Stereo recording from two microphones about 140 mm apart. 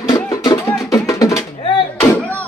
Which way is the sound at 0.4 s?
25° left (ahead or behind).